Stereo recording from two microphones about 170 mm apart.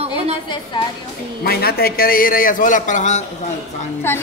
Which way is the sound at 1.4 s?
65° left (ahead or behind).